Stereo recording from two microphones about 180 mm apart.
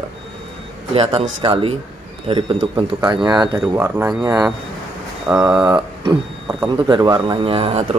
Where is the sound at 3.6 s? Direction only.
10° right (ahead or behind).